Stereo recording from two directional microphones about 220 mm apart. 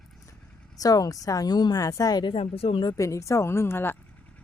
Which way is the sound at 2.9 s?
15° left (ahead or behind).